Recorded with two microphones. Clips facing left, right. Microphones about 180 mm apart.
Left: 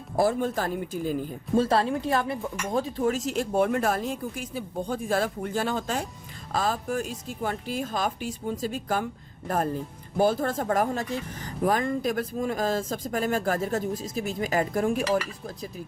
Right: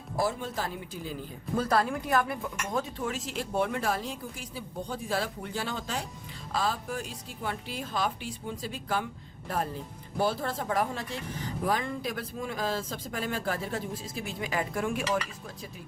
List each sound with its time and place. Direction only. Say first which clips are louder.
0.2 s speech: left 6 dB; 50° left (ahead or behind)
1.5 s speech: left 4 dB; 30° left (ahead or behind)
2.7 s speech: left 7 dB; 40° left (ahead or behind)